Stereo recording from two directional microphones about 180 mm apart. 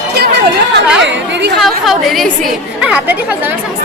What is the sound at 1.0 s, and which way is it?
Speech, 80° right.